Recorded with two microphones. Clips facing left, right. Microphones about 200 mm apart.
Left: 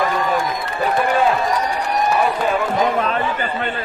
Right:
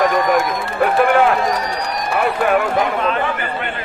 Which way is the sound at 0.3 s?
65° right (ahead or behind).